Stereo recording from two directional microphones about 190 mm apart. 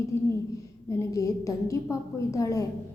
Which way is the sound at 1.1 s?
15° left (ahead or behind).